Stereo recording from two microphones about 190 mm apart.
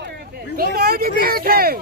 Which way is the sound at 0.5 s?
50° right (ahead or behind).